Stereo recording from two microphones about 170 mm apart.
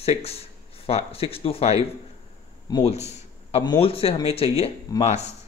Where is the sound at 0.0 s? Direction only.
35° left (ahead or behind).